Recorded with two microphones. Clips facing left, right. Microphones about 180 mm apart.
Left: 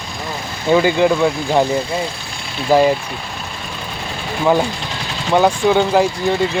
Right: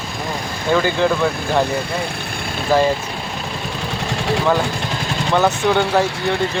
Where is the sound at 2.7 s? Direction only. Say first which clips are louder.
Left 3 dB; 15° left (ahead or behind).